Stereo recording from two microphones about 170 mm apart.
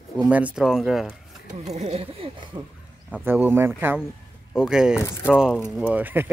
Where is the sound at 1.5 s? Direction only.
40° right (ahead or behind).